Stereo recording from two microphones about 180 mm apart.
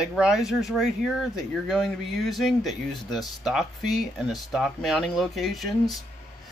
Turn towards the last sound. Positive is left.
turn(degrees=0)  # may be behind; listen again after turning